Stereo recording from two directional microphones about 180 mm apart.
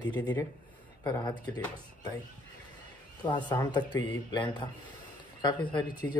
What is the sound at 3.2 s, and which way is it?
Speech, 25° left (ahead or behind).